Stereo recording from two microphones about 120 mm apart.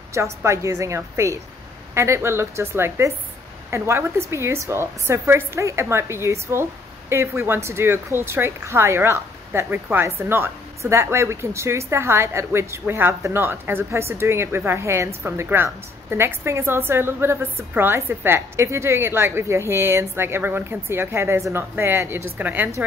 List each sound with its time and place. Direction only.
0.1 s a woman's voice: 25° right (ahead or behind)